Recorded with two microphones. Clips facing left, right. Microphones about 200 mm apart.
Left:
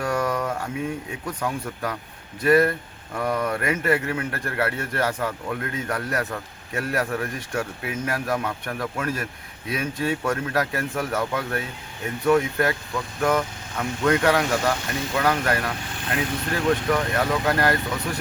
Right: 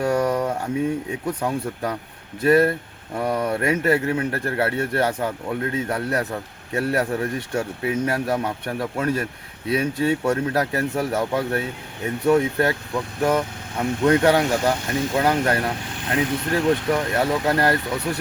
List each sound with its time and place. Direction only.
0.0 s mantra: 25° right (ahead or behind)
1.4 s speech: 25° right (ahead or behind)